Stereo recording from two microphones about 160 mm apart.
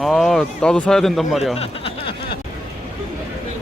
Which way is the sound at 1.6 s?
35° left (ahead or behind).